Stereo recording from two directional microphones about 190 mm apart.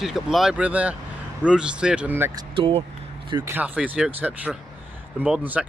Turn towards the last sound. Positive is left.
turn(degrees=-5)  # may be behind; listen again after turning